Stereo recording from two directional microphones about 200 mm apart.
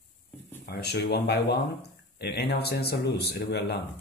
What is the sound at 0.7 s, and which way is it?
Speech, 55° left (ahead or behind).